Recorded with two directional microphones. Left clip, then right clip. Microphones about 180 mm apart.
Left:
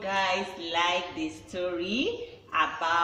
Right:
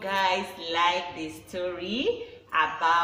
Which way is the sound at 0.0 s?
20° right (ahead or behind).